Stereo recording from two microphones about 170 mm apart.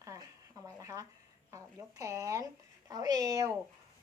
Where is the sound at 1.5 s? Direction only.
20° right (ahead or behind).